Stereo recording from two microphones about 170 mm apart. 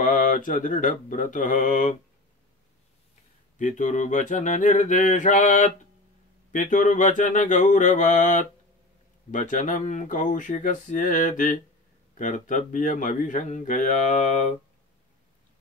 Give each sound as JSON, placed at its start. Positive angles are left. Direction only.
{"t": 0.0, "sound": "speech", "side_deg": 50}
{"t": 3.5, "sound": "speech", "side_deg": 45}